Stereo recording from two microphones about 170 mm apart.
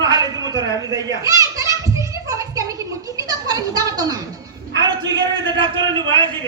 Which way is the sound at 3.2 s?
25° right (ahead or behind).